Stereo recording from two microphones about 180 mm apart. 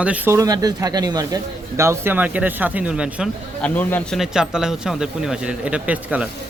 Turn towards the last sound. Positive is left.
turn(degrees=-5)  # may be behind; listen again after turning